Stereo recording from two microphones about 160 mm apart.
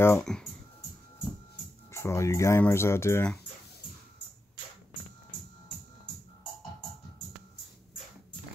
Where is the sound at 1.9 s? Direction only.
20° left (ahead or behind).